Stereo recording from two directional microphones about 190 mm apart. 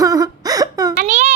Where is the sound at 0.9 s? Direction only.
45° right (ahead or behind).